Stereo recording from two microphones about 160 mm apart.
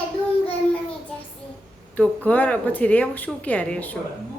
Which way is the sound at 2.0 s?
10° left (ahead or behind).